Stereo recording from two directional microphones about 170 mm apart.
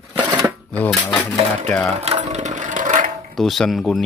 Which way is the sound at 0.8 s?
5° left (ahead or behind).